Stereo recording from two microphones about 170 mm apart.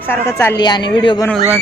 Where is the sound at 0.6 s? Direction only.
25° left (ahead or behind).